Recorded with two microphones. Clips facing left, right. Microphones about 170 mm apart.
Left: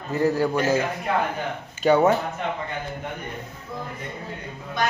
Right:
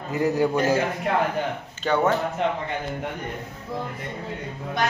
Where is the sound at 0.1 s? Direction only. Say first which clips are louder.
Even; 20° right (ahead or behind).